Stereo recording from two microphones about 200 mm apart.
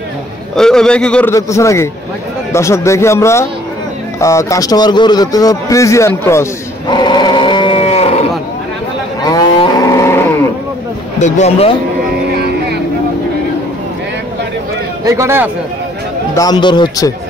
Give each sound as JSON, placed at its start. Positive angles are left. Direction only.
{"t": 0.6, "sound": "a man's voice", "side_deg": 5}
{"t": 6.9, "sound": "a sound", "side_deg": 20}
{"t": 9.2, "sound": "livestock", "side_deg": 20}
{"t": 11.1, "sound": "speech", "side_deg": 35}
{"t": 15.0, "sound": "speech", "side_deg": -15}
{"t": 16.3, "sound": "a man's voice", "side_deg": 20}